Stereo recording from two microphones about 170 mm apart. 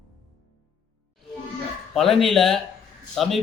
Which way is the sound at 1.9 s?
Centre (ahead or behind).